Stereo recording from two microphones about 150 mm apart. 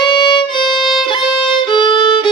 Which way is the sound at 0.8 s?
Centre (ahead or behind).